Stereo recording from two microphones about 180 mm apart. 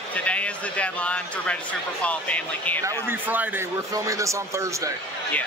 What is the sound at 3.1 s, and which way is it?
A man's voice, 10° right (ahead or behind).